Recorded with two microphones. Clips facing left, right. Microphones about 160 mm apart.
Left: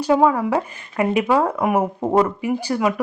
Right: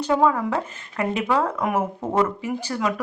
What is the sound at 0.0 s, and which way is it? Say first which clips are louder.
Speech: left 3 dB; 10° left (ahead or behind).